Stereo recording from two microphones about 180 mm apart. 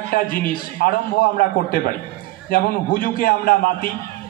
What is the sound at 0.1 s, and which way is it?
A man's voice, 55° left (ahead or behind).